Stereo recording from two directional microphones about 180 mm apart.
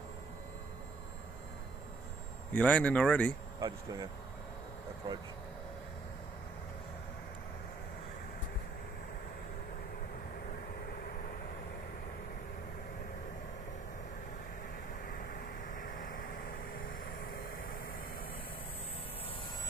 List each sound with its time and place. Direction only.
2.5 s speech: 5° left (ahead or behind)
3.5 s speech: 20° right (ahead or behind)
15.7 s vehicle: 50° left (ahead or behind)